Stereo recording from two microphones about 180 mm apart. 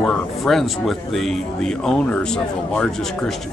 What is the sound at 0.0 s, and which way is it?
Speech, centre (ahead or behind).